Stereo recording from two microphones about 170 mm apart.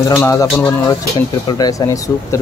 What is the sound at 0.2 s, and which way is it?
Speech, 20° left (ahead or behind).